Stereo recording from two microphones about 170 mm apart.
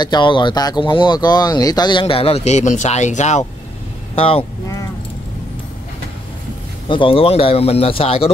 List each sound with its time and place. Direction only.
0.0 s speech: 25° left (ahead or behind)
6.9 s speech: 30° left (ahead or behind)